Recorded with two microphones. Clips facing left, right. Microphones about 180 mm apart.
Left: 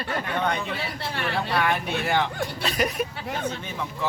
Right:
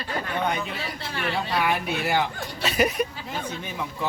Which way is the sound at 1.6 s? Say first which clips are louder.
Even; 5° right (ahead or behind).